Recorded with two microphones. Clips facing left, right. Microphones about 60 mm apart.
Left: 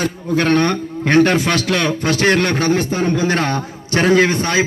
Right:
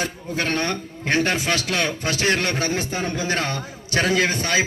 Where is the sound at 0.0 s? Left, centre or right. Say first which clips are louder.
Left 8 dB; left.